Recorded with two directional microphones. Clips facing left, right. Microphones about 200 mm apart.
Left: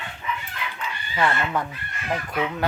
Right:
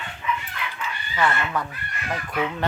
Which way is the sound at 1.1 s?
15° left (ahead or behind).